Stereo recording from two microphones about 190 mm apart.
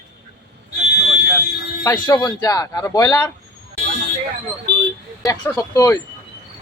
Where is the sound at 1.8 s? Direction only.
20° left (ahead or behind).